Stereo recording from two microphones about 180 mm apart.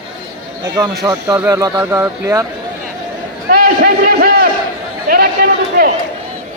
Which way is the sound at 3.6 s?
50° right (ahead or behind).